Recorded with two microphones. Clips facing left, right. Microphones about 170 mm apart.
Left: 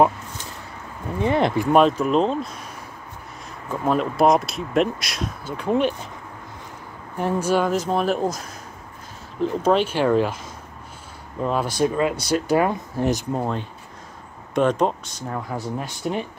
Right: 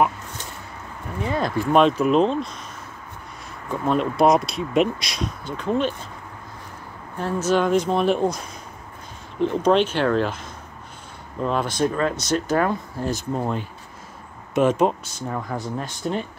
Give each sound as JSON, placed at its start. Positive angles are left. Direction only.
{"t": 1.2, "sound": "speech", "side_deg": 20}
{"t": 1.7, "sound": "speech", "side_deg": 5}
{"t": 3.6, "sound": "speech", "side_deg": 5}
{"t": 7.2, "sound": "speech", "side_deg": 15}
{"t": 11.4, "sound": "speech", "side_deg": 10}
{"t": 13.4, "sound": "speech", "side_deg": -5}
{"t": 15.8, "sound": "speech", "side_deg": 10}